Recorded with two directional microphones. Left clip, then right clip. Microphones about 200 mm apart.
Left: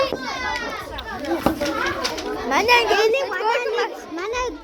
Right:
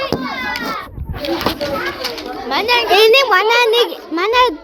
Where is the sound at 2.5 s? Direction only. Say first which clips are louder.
Right 1 dB; 15° left (ahead or behind).